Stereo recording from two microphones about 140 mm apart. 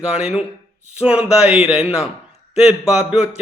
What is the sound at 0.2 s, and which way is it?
Speech, 5° right (ahead or behind).